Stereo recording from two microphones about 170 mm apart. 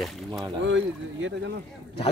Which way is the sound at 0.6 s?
90° right.